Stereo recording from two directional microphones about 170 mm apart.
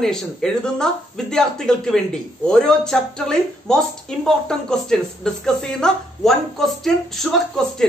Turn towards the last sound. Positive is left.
turn(degrees=5)  # may be behind; listen again after turning